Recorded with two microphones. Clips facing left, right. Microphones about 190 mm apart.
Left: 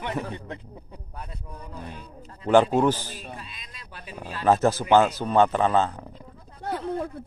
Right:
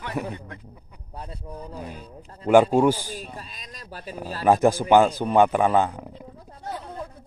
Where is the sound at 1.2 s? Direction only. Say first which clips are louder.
Right 5 dB; 30° right (ahead or behind).